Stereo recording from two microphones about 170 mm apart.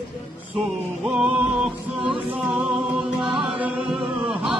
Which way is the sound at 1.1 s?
5° right (ahead or behind).